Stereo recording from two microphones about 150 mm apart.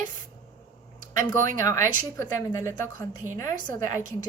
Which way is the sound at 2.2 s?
15° left (ahead or behind).